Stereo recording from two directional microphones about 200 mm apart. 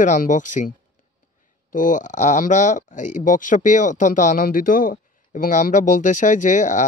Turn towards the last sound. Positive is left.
turn(degrees=40)  # may be behind; listen again after turning